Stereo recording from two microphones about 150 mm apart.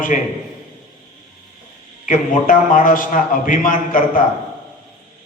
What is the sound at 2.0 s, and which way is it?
A man's voice, 60° left (ahead or behind).